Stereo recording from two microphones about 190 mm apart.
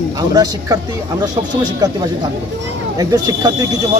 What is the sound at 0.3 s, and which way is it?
Speech, 20° right (ahead or behind).